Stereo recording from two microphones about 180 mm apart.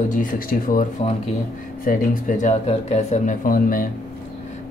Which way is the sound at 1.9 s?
45° left (ahead or behind).